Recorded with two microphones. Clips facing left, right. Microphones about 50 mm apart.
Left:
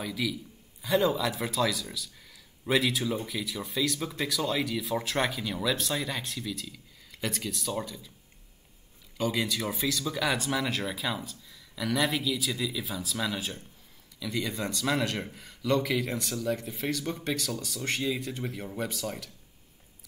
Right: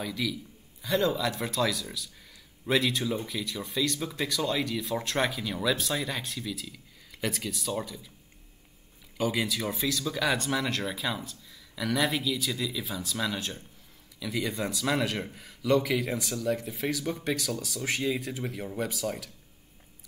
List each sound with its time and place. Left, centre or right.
0.0 s speech: centre
9.2 s speech: centre